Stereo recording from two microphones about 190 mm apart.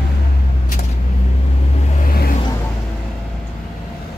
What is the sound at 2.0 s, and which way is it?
Vehicle, 50° left (ahead or behind).